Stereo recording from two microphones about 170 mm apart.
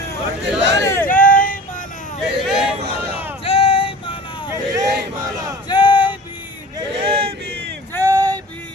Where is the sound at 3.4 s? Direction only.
35° left (ahead or behind).